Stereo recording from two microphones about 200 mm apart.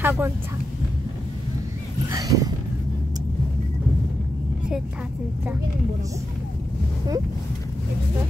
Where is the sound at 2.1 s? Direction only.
20° right (ahead or behind).